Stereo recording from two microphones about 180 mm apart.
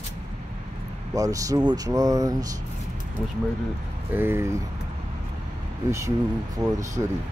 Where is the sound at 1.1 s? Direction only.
20° right (ahead or behind).